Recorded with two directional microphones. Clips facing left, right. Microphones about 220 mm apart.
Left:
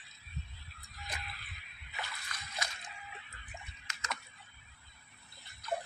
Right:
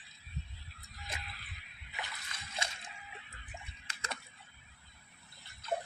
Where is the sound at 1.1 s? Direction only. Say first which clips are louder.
Left 1 dB; 25° right (ahead or behind).